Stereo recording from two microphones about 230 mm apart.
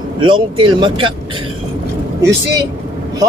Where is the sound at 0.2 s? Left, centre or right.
Right.